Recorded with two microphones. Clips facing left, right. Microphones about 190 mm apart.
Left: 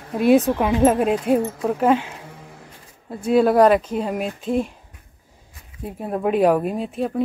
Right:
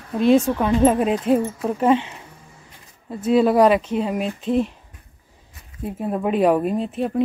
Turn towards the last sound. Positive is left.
turn(degrees=0)  # may be behind; listen again after turning